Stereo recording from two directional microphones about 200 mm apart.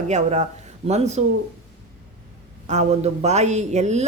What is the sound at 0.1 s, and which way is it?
Speech, 35° right (ahead or behind).